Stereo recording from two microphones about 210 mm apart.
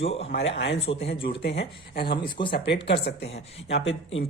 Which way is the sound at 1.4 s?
55° left (ahead or behind).